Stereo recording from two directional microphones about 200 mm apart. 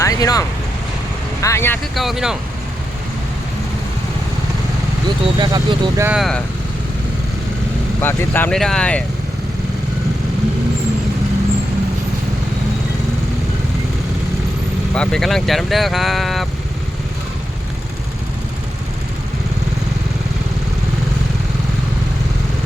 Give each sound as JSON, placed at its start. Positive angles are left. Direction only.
{"t": 0.0, "sound": "vehicle", "side_deg": 20}
{"t": 1.4, "sound": "speech", "side_deg": 15}
{"t": 2.0, "sound": "speech", "side_deg": 0}
{"t": 5.0, "sound": "speech", "side_deg": -20}
{"t": 6.1, "sound": "speech", "side_deg": 0}
{"t": 8.0, "sound": "speech", "side_deg": 10}
{"t": 14.9, "sound": "speech", "side_deg": 5}